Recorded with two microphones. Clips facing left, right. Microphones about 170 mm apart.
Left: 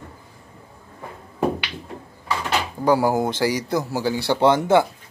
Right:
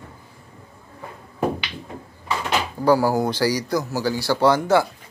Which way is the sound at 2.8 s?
20° left (ahead or behind).